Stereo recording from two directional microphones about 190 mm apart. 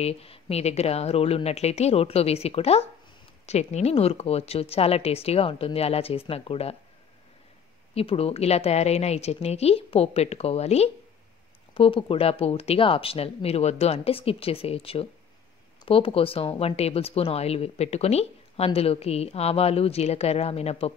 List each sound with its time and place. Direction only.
0.0 s speech: 30° left (ahead or behind)
7.9 s speech: 30° left (ahead or behind)